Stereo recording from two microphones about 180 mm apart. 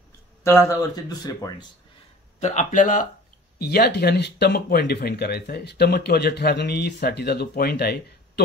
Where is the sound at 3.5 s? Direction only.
60° left (ahead or behind).